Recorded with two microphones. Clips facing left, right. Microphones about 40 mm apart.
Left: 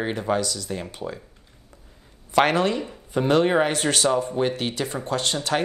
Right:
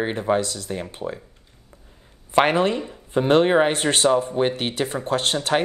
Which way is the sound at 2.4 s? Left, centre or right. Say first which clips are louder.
Right 2 dB; right.